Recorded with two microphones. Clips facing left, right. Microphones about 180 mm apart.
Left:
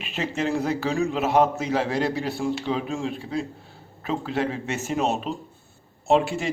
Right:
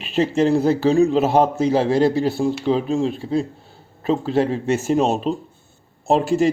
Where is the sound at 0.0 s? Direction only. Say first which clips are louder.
Right 9 dB; 35° right (ahead or behind).